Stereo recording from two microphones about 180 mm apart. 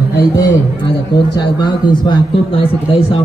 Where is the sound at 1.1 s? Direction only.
65° left (ahead or behind).